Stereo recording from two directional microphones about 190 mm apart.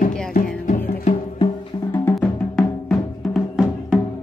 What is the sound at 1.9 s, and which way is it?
Drum, 10° left (ahead or behind).